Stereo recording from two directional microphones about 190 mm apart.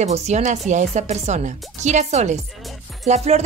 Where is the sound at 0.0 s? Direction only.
35° right (ahead or behind).